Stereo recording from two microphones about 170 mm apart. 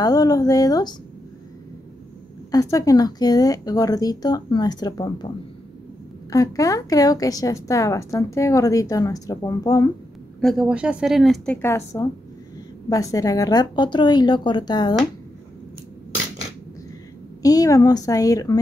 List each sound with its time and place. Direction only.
0.0 s a woman's voice: 20° left (ahead or behind)
2.5 s a woman's voice: 20° left (ahead or behind)
6.3 s a woman's voice: 20° left (ahead or behind)
10.4 s a woman's voice: centre (ahead or behind); by 15.0 s 25° left (ahead or behind)
17.4 s a woman's voice: 20° left (ahead or behind)